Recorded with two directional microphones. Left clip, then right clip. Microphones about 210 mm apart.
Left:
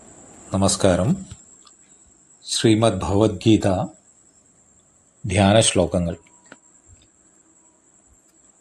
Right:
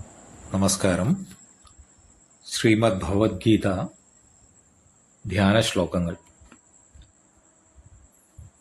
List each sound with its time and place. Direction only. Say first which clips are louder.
0.5 s speech: left 5 dB; 15° left (ahead or behind)
2.4 s speech: left 3 dB; 15° left (ahead or behind)
5.3 s speech: left 5 dB; 15° left (ahead or behind)